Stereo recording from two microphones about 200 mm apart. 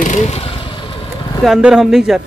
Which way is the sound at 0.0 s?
35° left (ahead or behind).